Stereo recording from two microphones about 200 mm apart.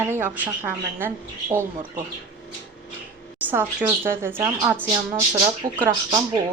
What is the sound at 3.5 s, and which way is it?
A woman's voice, 10° right (ahead or behind).